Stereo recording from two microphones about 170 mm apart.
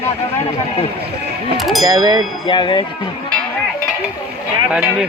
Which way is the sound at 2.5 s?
30° left (ahead or behind).